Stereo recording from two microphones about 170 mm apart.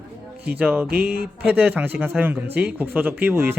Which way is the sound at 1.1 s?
65° right (ahead or behind).